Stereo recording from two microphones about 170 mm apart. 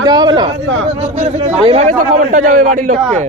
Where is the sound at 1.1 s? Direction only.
35° right (ahead or behind).